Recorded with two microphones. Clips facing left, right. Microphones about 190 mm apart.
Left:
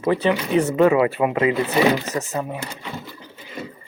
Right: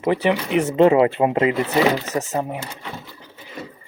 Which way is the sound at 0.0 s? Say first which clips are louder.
Even; 20° right (ahead or behind).